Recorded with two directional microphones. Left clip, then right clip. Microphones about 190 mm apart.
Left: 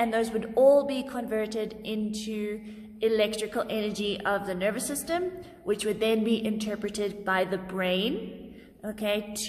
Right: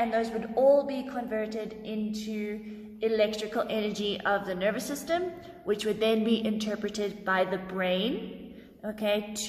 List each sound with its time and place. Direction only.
0.0 s a woman's voice: 35° left (ahead or behind); by 9.5 s 15° left (ahead or behind)